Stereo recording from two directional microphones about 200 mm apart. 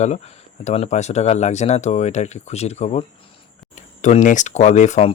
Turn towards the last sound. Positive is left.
turn(degrees=35)  # may be behind; listen again after turning